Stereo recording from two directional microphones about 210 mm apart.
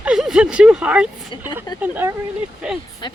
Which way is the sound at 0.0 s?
5° right (ahead or behind).